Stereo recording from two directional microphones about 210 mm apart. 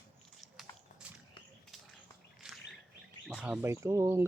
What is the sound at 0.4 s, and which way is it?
Biting, 40° right (ahead or behind).